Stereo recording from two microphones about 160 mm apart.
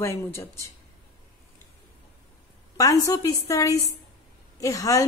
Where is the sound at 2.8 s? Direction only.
20° left (ahead or behind).